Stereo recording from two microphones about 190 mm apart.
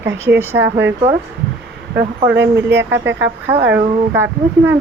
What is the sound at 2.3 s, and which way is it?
Speech, 65° right (ahead or behind).